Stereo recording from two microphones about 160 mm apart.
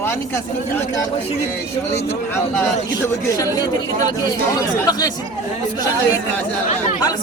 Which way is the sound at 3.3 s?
25° left (ahead or behind).